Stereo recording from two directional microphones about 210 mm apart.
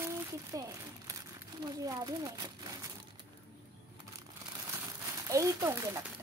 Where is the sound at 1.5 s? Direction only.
20° right (ahead or behind).